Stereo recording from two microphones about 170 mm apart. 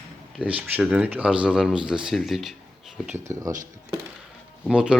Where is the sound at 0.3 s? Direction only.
10° right (ahead or behind).